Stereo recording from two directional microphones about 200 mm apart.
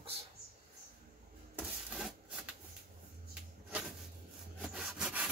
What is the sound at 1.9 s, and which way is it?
Printer, centre (ahead or behind).